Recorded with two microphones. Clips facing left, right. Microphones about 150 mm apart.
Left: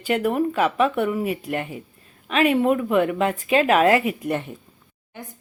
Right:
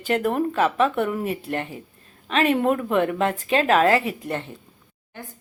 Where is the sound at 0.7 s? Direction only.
10° left (ahead or behind).